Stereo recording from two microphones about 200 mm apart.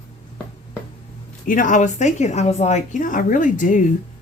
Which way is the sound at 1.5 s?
40° left (ahead or behind).